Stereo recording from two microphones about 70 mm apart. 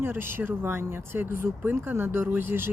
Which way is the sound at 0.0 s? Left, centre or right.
Right.